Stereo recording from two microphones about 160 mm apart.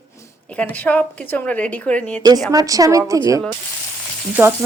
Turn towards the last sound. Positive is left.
turn(degrees=-15)  # may be behind; listen again after turning